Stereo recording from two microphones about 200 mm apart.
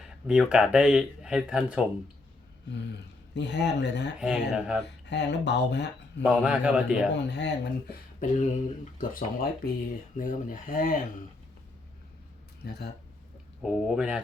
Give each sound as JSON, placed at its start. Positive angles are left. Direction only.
{"t": 0.0, "sound": "speech", "side_deg": -5}
{"t": 3.3, "sound": "speech", "side_deg": 60}
{"t": 4.2, "sound": "a man's voice", "side_deg": -5}
{"t": 5.0, "sound": "speech", "side_deg": 60}
{"t": 6.2, "sound": "a man's voice", "side_deg": -5}
{"t": 7.3, "sound": "speech", "side_deg": 60}
{"t": 8.2, "sound": "speech", "side_deg": 35}
{"t": 12.6, "sound": "speech", "side_deg": 55}
{"t": 13.6, "sound": "a man's voice", "side_deg": -5}